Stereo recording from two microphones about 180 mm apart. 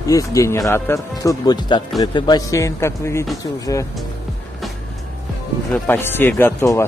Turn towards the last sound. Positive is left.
turn(degrees=15)  # may be behind; listen again after turning